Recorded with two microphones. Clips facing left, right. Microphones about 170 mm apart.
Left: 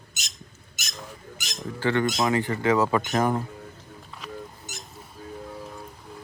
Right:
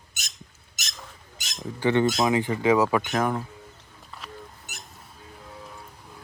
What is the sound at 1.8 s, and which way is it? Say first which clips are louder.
Speech: right 2 dB; 20° right (ahead or behind).